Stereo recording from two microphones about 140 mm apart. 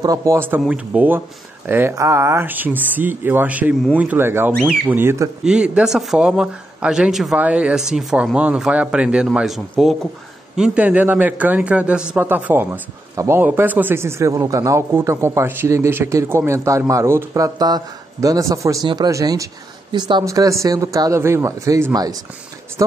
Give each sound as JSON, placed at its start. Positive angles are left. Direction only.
{"t": 0.0, "sound": "a man's voice", "side_deg": -25}
{"t": 13.1, "sound": "speech", "side_deg": -25}
{"t": 13.4, "sound": "speech", "side_deg": -10}